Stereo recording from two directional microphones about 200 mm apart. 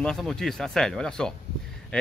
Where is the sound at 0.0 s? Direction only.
Centre (ahead or behind).